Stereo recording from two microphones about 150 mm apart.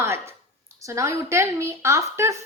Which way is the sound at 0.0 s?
15° right (ahead or behind).